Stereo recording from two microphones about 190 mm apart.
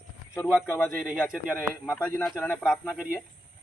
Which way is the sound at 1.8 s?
10° left (ahead or behind).